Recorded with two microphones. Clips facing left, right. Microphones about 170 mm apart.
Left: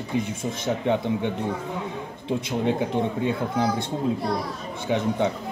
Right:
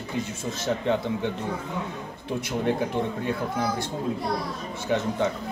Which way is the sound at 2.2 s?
20° left (ahead or behind).